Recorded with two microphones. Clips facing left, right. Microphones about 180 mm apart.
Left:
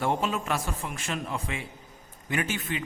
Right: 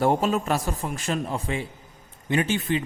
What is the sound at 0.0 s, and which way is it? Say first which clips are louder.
A man's voice: right 6 dB; 40° right (ahead or behind).